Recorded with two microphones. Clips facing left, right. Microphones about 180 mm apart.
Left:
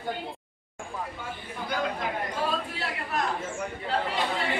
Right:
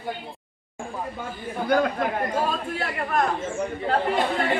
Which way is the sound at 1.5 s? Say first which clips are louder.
Right 9 dB; 50° right (ahead or behind).